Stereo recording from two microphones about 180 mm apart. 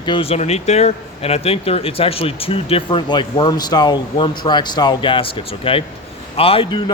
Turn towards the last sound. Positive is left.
turn(degrees=30)  # may be behind; listen again after turning